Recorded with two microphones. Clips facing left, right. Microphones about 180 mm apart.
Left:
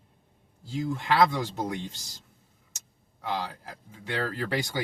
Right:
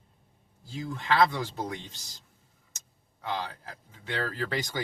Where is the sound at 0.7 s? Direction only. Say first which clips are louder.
Left 2 dB; 15° left (ahead or behind).